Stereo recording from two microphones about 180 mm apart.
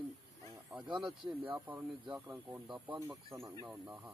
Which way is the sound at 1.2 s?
10° right (ahead or behind).